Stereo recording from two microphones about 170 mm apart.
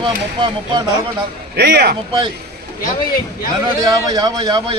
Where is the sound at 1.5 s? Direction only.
75° right (ahead or behind).